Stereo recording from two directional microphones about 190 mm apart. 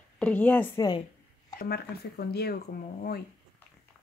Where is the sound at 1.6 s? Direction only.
55° left (ahead or behind).